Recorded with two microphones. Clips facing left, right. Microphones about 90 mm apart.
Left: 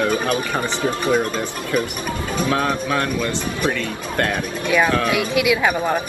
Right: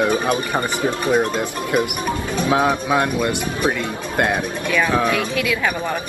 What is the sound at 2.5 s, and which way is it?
Speech, 15° right (ahead or behind).